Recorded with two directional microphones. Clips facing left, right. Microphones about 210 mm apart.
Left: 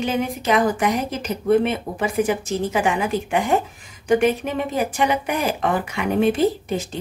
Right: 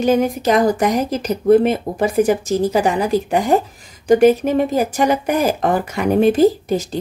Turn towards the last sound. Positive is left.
turn(degrees=-40)  # may be behind; listen again after turning